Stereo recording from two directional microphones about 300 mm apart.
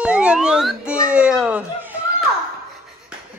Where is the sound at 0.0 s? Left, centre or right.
Centre.